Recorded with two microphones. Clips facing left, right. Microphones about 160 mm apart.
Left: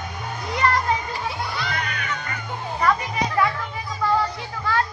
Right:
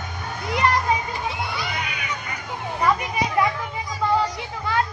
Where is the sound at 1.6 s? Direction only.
10° right (ahead or behind).